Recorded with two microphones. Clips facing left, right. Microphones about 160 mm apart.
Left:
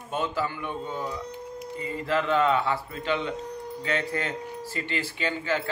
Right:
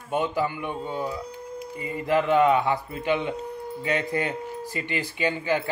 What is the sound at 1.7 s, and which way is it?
Speech, 15° right (ahead or behind).